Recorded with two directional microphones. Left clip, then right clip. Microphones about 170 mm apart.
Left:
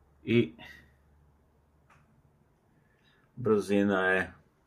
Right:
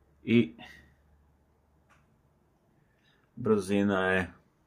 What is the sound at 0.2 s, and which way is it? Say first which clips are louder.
Speech: right 1 dB; 10° right (ahead or behind).